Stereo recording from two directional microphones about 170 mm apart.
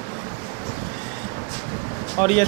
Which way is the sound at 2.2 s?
35° left (ahead or behind).